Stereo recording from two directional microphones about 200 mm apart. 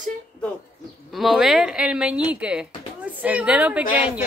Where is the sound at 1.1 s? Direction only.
Centre (ahead or behind).